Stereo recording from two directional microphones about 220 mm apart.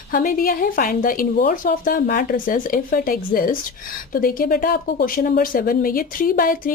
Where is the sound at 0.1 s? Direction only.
40° left (ahead or behind).